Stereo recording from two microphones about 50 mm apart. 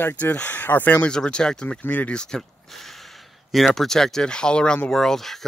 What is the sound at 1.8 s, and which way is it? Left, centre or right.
Speech, left.